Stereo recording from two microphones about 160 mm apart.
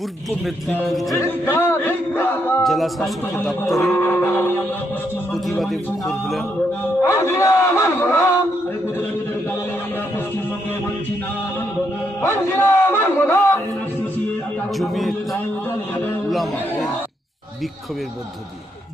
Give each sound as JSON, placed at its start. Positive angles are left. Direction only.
{"t": 0.3, "sound": "a man's voice", "side_deg": 5}
{"t": 1.1, "sound": "music", "side_deg": 15}
{"t": 2.6, "sound": "a man's voice", "side_deg": 0}
{"t": 3.9, "sound": "a man's voice", "side_deg": 15}
{"t": 5.3, "sound": "a man's voice", "side_deg": 0}
{"t": 7.0, "sound": "a man's voice", "side_deg": 15}
{"t": 12.2, "sound": "speech", "side_deg": 15}
{"t": 14.8, "sound": "a man's voice", "side_deg": 0}
{"t": 16.3, "sound": "chatter", "side_deg": 0}